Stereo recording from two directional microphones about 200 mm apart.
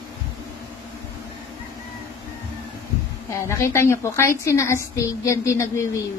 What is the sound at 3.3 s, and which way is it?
A woman's voice, 15° left (ahead or behind).